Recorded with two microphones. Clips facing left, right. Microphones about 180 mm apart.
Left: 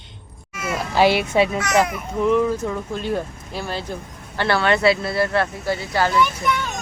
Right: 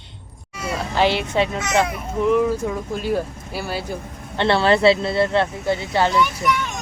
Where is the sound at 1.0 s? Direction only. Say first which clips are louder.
Left 3 dB; 10° left (ahead or behind).